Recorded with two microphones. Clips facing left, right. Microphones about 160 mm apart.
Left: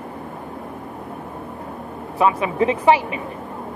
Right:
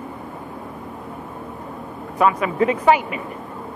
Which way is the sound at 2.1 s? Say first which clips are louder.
Even; 25° left (ahead or behind).